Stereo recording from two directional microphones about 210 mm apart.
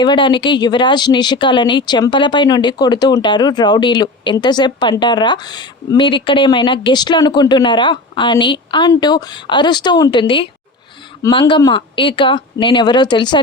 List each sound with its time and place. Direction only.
0.0 s speech: 20° left (ahead or behind)